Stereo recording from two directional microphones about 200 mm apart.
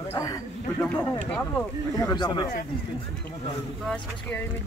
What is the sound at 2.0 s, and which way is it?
Speech, 20° left (ahead or behind).